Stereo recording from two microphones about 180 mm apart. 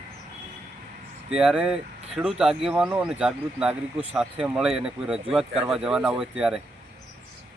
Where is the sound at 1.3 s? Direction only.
5° right (ahead or behind).